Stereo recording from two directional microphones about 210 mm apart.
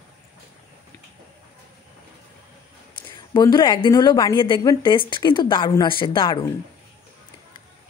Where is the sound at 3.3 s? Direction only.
20° left (ahead or behind).